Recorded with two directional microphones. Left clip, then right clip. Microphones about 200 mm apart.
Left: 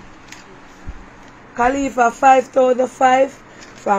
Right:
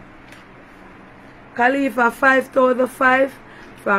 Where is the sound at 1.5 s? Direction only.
10° right (ahead or behind).